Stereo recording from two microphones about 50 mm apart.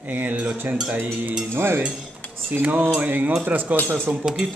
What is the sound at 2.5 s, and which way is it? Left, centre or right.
Speech, right.